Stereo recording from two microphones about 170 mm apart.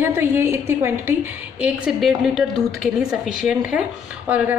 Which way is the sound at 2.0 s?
Centre (ahead or behind).